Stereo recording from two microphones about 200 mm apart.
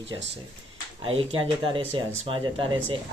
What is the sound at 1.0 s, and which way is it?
Speech, 25° right (ahead or behind).